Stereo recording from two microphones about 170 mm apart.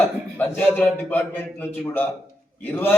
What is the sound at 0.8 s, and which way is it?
A man's voice, 10° left (ahead or behind).